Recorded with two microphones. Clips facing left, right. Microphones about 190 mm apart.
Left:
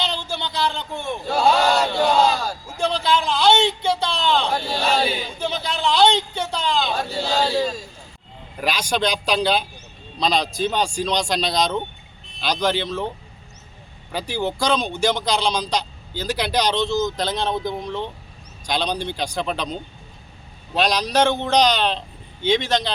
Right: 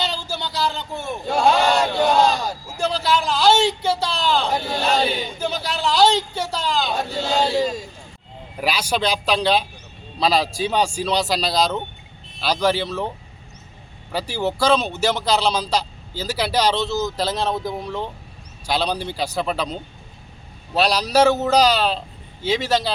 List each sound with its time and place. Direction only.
0.0 s a man's voice: 5° right (ahead or behind)
1.7 s battle cry: centre (ahead or behind)
2.6 s a man's voice: 5° right (ahead or behind)
4.8 s a man's voice: 5° left (ahead or behind)
14.1 s a man's voice: 5° right (ahead or behind)
20.7 s a man's voice: 5° right (ahead or behind)